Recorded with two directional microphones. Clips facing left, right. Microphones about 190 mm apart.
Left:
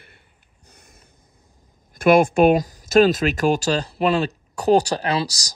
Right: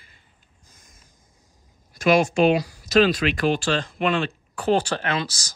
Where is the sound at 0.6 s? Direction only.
65° left (ahead or behind).